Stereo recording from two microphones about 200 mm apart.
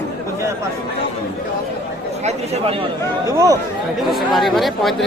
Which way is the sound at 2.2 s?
35° right (ahead or behind).